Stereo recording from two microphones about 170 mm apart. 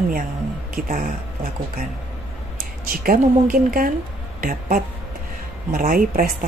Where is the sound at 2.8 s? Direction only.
60° right (ahead or behind).